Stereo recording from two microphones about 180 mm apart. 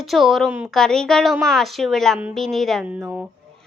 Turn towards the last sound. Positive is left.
turn(degrees=-10)  # may be behind; listen again after turning